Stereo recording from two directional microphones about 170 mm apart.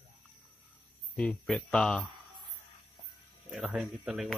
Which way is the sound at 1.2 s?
5° left (ahead or behind).